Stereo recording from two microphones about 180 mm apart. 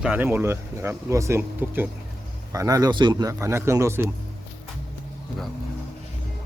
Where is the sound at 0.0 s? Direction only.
10° right (ahead or behind).